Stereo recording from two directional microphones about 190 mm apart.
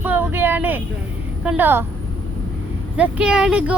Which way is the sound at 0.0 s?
10° right (ahead or behind).